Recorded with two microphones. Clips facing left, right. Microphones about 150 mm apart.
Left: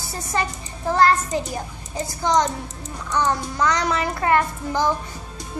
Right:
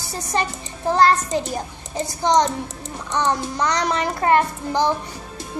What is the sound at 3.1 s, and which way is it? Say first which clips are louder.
Child singing: right 1 dB; 20° right (ahead or behind).